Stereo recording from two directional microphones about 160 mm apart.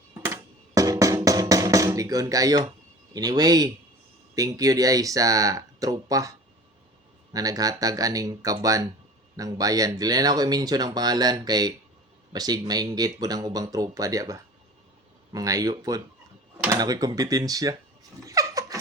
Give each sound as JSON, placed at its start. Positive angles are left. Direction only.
{"t": 0.1, "sound": "music", "side_deg": -20}
{"t": 3.1, "sound": "speech", "side_deg": -25}
{"t": 7.3, "sound": "speech", "side_deg": -20}
{"t": 18.3, "sound": "vehicle", "side_deg": -20}